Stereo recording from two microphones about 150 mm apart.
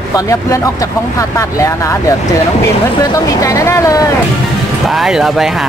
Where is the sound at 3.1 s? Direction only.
20° left (ahead or behind).